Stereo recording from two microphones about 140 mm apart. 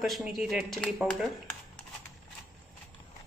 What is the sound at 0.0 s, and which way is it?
Speech, centre (ahead or behind).